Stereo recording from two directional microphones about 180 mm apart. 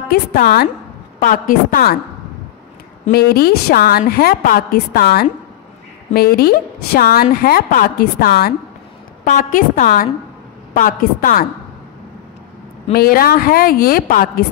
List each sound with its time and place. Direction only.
0.1 s a woman's voice: 60° left (ahead or behind)
1.2 s a woman's voice: 50° left (ahead or behind)
3.1 s a woman's voice: 60° left (ahead or behind)
9.2 s a woman's voice: 45° left (ahead or behind)
12.9 s a woman's voice: 55° left (ahead or behind)